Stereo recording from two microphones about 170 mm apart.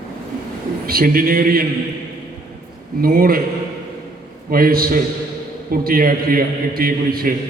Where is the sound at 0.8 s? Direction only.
60° right (ahead or behind).